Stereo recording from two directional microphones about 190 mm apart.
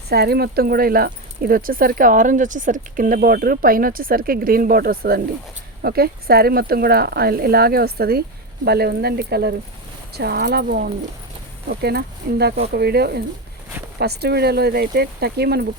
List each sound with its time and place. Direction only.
0.1 s speech: 55° right (ahead or behind)